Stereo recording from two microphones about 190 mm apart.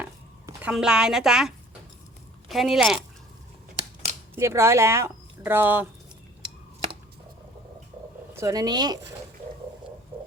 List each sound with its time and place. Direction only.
0.0 s zipper: 10° right (ahead or behind)
2.5 s speech: centre (ahead or behind)
4.4 s speech: 15° right (ahead or behind)
8.3 s speech: 15° right (ahead or behind)